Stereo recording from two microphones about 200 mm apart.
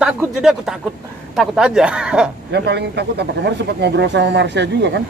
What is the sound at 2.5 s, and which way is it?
Speech, 55° right (ahead or behind).